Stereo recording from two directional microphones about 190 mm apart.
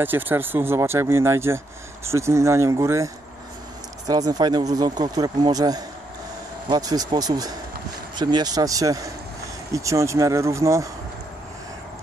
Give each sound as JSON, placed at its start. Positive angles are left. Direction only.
{"t": 0.0, "sound": "speech", "side_deg": -10}
{"t": 4.1, "sound": "speech", "side_deg": -20}